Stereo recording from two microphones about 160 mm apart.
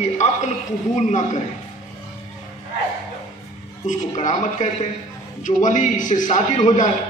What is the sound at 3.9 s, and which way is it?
A man's voice, 50° left (ahead or behind).